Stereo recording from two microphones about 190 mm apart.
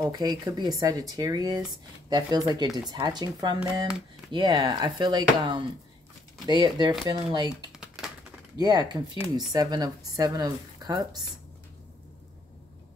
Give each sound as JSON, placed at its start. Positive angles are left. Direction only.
{"t": 0.0, "sound": "speech", "side_deg": -20}
{"t": 7.8, "sound": "typing", "side_deg": 0}
{"t": 8.5, "sound": "speech", "side_deg": -20}